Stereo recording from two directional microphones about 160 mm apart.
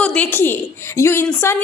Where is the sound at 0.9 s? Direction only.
15° left (ahead or behind).